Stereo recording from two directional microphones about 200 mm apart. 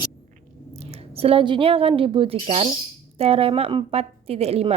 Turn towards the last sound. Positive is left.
turn(degrees=-30)  # may be behind; listen again after turning